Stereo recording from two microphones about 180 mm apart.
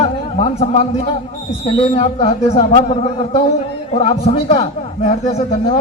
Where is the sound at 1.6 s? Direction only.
30° left (ahead or behind).